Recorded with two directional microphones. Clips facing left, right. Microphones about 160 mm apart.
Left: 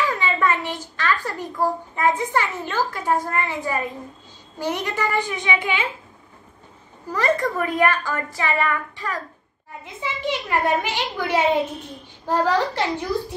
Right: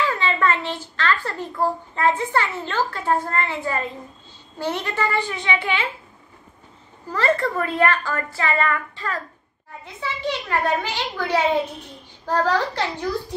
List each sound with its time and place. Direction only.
0.0 s a sound: 15° left (ahead or behind)
0.9 s a woman's voice: 15° left (ahead or behind)
7.1 s a woman's voice: 15° left (ahead or behind)